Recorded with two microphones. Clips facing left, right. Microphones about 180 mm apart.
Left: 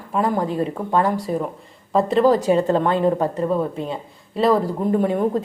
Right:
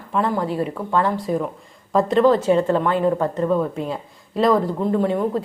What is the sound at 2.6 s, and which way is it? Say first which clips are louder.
Speech: left 1 dB; 35° left (ahead or behind).